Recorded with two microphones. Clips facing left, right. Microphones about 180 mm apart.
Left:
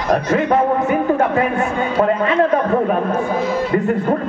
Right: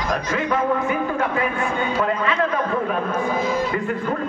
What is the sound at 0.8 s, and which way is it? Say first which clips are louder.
Speech: left 6 dB; 45° left (ahead or behind).